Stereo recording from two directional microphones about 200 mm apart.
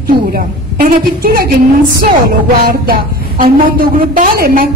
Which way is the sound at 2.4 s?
45° right (ahead or behind).